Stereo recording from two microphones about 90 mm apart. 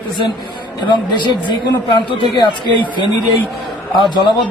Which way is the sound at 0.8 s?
55° left (ahead or behind).